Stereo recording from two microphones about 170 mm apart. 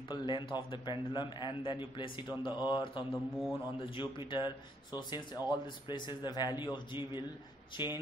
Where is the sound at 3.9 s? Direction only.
30° left (ahead or behind).